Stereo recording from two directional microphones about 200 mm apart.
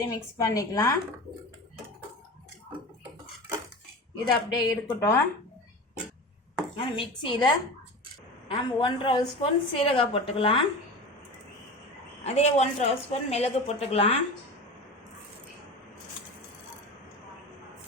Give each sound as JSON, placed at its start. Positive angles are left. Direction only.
{"t": 0.0, "sound": "a woman's voice", "side_deg": 15}
{"t": 4.3, "sound": "a woman's voice", "side_deg": 20}
{"t": 6.7, "sound": "a woman's voice", "side_deg": 25}
{"t": 12.2, "sound": "a woman's voice", "side_deg": 30}